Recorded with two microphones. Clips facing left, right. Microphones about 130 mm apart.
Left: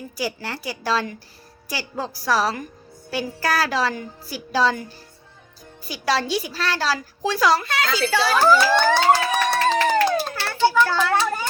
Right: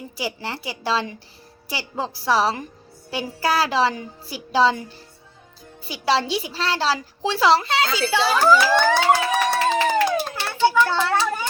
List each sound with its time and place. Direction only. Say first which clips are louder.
0.2 s a woman's voice: left 1 dB; 20° right (ahead or behind)
8.6 s siren: left 1 dB; 15° right (ahead or behind)
9.4 s a sound: even; 10° right (ahead or behind)